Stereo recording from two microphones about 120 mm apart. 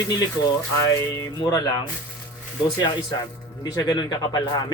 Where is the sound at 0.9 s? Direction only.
30° left (ahead or behind).